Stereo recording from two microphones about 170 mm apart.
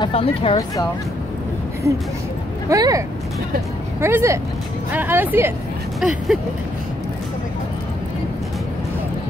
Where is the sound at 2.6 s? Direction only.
20° right (ahead or behind).